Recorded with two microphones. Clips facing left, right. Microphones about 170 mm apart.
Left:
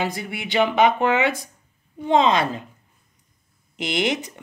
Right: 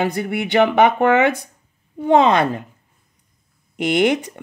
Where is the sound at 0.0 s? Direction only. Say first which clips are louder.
Right 6 dB; 55° right (ahead or behind).